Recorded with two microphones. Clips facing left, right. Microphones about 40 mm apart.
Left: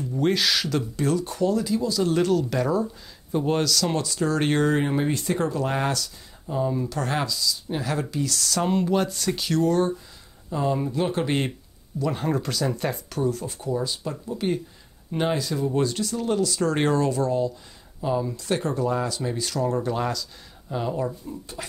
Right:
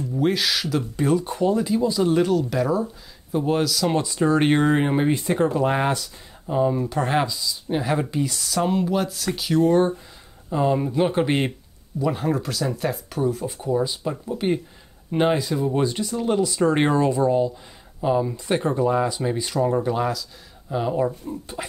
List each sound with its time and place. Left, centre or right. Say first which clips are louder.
0.1 s speech: even; centre
2.1 s speech: right 2 dB; centre
9.6 s speech: right 5 dB; right
12.1 s speech: right 2 dB; centre
13.2 s speech: right 2 dB; centre
19.9 s speech: right 3 dB; centre; by 21.6 s right